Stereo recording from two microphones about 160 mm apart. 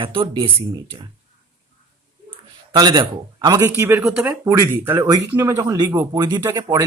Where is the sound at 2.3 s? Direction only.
25° right (ahead or behind).